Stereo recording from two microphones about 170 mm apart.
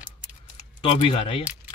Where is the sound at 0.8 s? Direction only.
30° left (ahead or behind).